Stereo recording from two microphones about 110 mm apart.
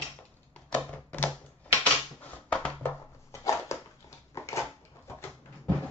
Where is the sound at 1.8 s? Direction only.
15° left (ahead or behind).